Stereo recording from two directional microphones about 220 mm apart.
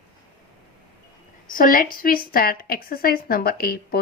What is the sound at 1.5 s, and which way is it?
Speech, 40° left (ahead or behind).